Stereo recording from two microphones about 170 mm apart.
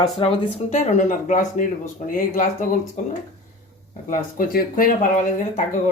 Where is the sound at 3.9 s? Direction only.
50° left (ahead or behind).